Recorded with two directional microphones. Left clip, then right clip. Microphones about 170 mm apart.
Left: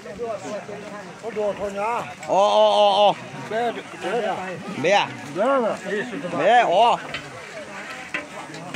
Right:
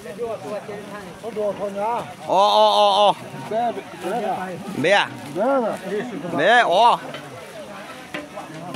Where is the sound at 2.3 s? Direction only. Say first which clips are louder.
Right 1 dB; 20° right (ahead or behind).